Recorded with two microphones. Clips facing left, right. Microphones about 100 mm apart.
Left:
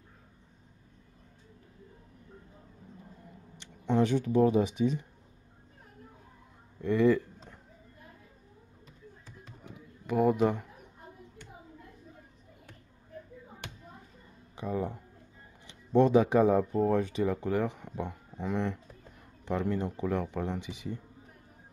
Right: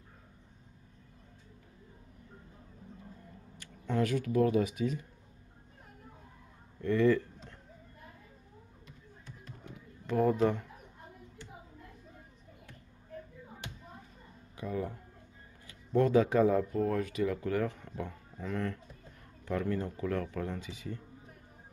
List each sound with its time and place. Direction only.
3.5 s speech: 20° left (ahead or behind)
6.8 s a sound: 15° left (ahead or behind)
9.6 s pigeon: 10° left (ahead or behind)
14.6 s speech: 25° left (ahead or behind)